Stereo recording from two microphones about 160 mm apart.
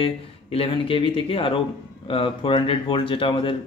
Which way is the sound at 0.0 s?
35° left (ahead or behind).